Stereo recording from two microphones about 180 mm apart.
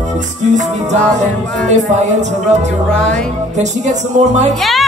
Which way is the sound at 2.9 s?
5° left (ahead or behind).